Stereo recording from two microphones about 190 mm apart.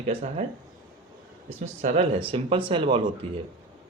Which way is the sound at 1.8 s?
30° right (ahead or behind).